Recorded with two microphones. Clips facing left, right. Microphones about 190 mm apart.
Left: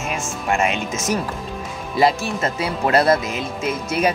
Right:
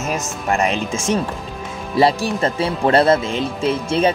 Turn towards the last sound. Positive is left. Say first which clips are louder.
# right 4 dB
turn(degrees=-30)  # may be behind; listen again after turning